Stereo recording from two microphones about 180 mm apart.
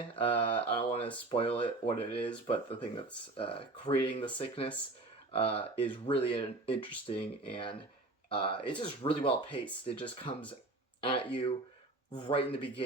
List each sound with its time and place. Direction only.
0.2 s speech: 30° left (ahead or behind)